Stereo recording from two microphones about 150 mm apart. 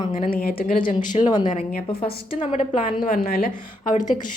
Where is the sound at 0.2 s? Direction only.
75° left (ahead or behind).